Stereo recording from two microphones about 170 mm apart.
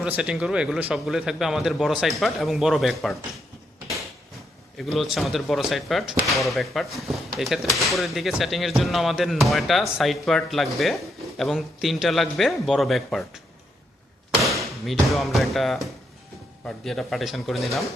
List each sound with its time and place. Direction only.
0.0 s speech: 5° right (ahead or behind)
4.8 s speech: centre (ahead or behind)
14.6 s speech: centre (ahead or behind)